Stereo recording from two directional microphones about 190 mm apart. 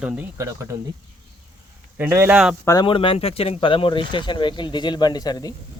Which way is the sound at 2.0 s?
10° right (ahead or behind).